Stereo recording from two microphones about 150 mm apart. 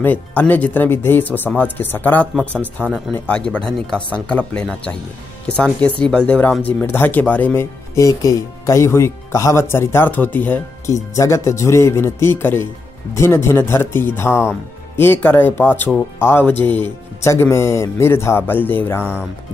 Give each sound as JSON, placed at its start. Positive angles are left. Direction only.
{"t": 0.0, "sound": "speech", "side_deg": 10}
{"t": 2.5, "sound": "speech", "side_deg": -10}
{"t": 2.9, "sound": "speech", "side_deg": 10}